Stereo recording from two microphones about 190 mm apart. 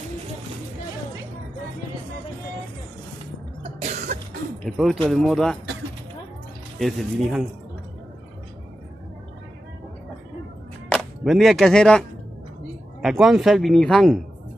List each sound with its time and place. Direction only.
3.6 s cough: 35° right (ahead or behind)
4.6 s speech: centre (ahead or behind)
6.8 s speech: centre (ahead or behind)
10.9 s speech: centre (ahead or behind)
13.0 s speech: centre (ahead or behind)